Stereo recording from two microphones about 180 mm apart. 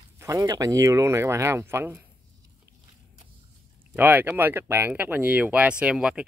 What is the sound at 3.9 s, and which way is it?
Speech, 10° right (ahead or behind).